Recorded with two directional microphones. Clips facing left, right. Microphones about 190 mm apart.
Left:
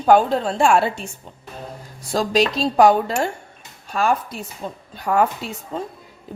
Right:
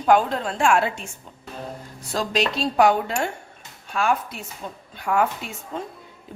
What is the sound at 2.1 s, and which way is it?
A woman's voice, 35° left (ahead or behind).